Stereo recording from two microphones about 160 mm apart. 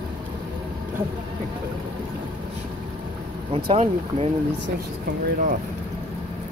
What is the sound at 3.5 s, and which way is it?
Speech, 35° right (ahead or behind).